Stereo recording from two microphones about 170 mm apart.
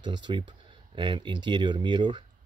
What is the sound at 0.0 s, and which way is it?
Speech, 25° right (ahead or behind).